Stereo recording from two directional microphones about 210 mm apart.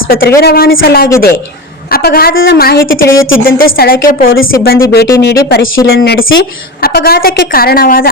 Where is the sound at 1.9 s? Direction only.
45° left (ahead or behind).